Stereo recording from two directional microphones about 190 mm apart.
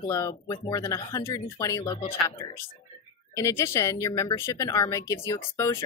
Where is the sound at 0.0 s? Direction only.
15° left (ahead or behind).